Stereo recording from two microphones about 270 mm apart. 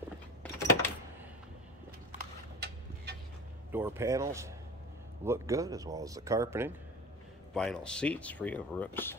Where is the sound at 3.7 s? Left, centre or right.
Centre.